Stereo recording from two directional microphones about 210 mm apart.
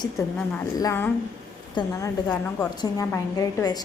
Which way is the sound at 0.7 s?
15° left (ahead or behind).